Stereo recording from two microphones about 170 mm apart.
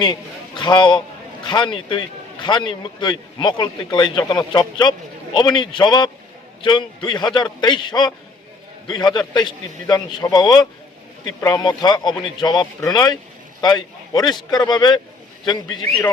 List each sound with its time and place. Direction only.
0.0 s a man's voice: 25° left (ahead or behind)